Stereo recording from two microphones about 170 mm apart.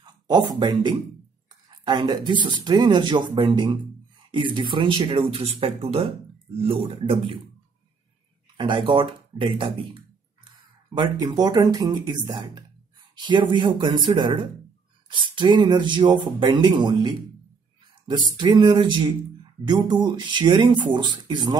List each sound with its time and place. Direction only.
0.0 s speech: 25° right (ahead or behind)
8.5 s speech: 30° right (ahead or behind)
18.4 s speech: 25° right (ahead or behind)